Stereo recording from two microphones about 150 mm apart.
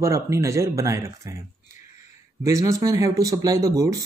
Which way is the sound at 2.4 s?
20° right (ahead or behind).